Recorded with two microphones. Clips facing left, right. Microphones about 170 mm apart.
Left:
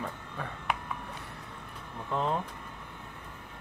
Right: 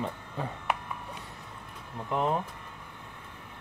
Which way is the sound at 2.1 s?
15° right (ahead or behind).